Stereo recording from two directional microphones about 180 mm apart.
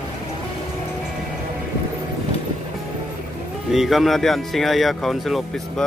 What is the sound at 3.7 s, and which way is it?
Speech, centre (ahead or behind).